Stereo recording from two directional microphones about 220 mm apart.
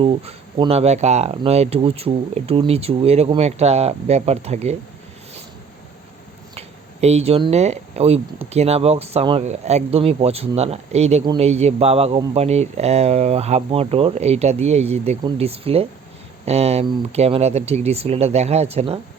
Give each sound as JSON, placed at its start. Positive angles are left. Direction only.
{"t": 0.0, "sound": "speech", "side_deg": -25}
{"t": 6.5, "sound": "speech", "side_deg": -30}